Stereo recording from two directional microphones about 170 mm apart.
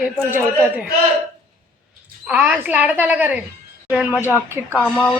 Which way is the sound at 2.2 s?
10° right (ahead or behind).